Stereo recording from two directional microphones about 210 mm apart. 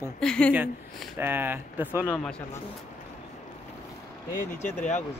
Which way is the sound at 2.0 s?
5° left (ahead or behind).